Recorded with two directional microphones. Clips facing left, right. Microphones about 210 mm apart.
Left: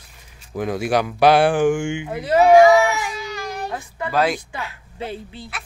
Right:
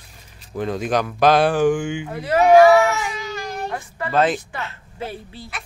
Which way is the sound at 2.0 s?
20° left (ahead or behind).